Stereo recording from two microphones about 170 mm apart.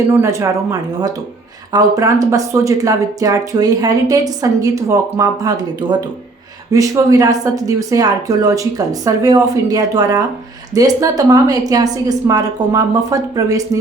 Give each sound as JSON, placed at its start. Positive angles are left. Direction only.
{"t": 0.1, "sound": "speech", "side_deg": -15}